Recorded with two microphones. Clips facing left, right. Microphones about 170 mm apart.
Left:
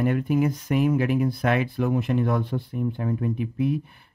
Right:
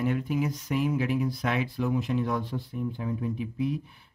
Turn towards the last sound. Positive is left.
turn(degrees=60)  # may be behind; listen again after turning